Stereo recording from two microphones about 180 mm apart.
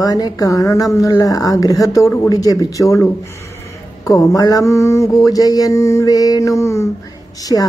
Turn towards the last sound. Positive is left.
turn(degrees=20)  # may be behind; listen again after turning